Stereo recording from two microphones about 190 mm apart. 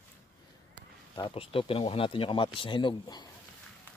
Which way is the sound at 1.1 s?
25° left (ahead or behind).